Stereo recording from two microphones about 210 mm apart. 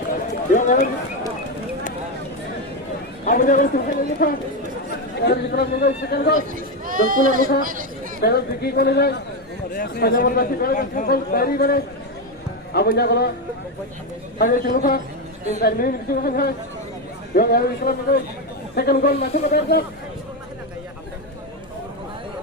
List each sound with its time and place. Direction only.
0.5 s a sound: 40° left (ahead or behind)
3.2 s a man's voice: 40° left (ahead or behind)
5.1 s speech: 50° left (ahead or behind)
6.5 s speech: 40° right (ahead or behind)
8.2 s speech: 50° left (ahead or behind)
14.3 s speech: 45° left (ahead or behind)